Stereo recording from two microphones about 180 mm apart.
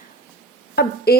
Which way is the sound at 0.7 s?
60° left (ahead or behind).